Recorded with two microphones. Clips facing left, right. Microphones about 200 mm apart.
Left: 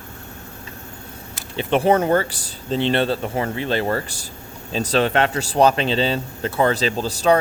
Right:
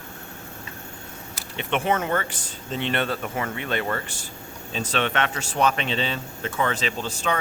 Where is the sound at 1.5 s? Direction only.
35° left (ahead or behind).